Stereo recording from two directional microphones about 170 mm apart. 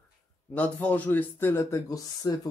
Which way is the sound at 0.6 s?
10° left (ahead or behind).